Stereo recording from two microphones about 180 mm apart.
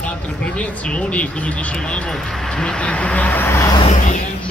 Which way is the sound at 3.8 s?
40° left (ahead or behind).